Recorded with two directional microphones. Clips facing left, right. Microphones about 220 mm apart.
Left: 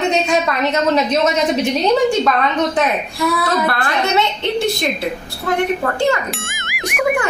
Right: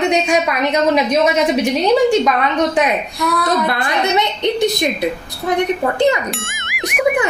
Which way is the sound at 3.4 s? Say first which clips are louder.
Right 1 dB; 15° right (ahead or behind).